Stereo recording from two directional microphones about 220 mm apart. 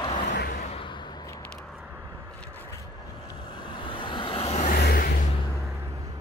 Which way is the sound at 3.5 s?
20° left (ahead or behind).